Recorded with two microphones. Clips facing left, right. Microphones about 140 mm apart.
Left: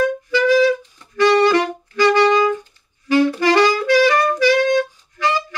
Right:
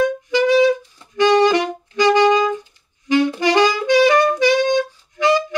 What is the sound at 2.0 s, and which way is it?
Music, 20° right (ahead or behind).